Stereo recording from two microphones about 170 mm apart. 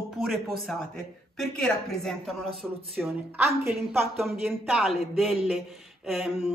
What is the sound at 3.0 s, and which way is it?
A woman's voice, 15° right (ahead or behind).